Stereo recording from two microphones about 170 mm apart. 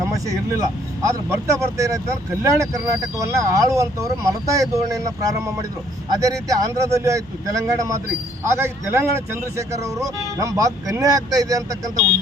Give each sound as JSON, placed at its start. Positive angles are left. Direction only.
{"t": 0.3, "sound": "a man's voice", "side_deg": -20}